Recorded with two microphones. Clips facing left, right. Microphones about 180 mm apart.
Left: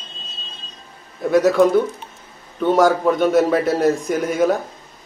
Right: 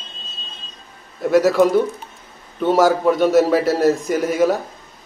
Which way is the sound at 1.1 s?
Centre (ahead or behind).